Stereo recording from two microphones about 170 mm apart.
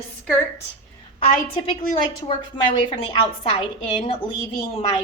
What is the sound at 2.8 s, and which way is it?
A woman's voice, 30° left (ahead or behind).